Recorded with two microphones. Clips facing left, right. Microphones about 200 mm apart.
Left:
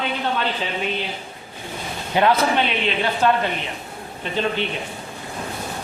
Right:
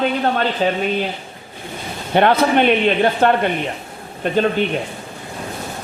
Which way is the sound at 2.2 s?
60° right (ahead or behind).